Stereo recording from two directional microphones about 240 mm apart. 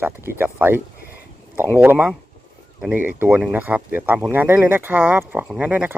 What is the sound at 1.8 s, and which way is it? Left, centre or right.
Speech, centre.